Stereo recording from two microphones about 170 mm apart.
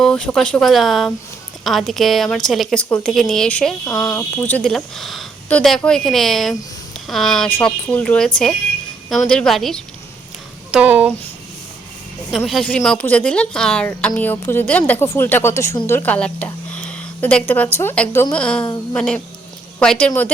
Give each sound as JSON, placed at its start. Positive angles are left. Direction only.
{"t": 0.0, "sound": "a woman's voice", "side_deg": 5}
{"t": 12.5, "sound": "a woman's voice", "side_deg": 5}